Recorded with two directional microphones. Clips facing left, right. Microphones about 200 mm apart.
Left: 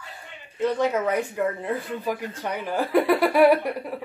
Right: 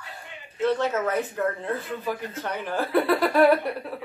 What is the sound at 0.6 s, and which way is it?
Speech, 15° left (ahead or behind).